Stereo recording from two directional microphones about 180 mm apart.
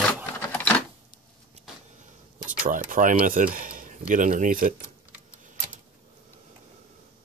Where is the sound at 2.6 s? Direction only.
45° right (ahead or behind).